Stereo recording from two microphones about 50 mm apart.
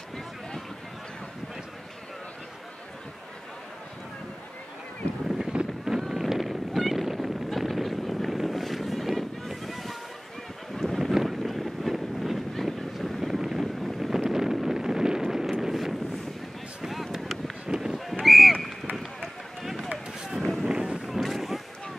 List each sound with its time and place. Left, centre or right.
5.5 s boat: centre
5.9 s wind noise: centre
10.8 s a sound: centre
11.2 s boat: centre
15.6 s wind noise: centre
16.8 s a sound: centre
17.6 s honk: centre
18.2 s a sound: centre
19.6 s run: centre
20.6 s run: centre
21.1 s boat: centre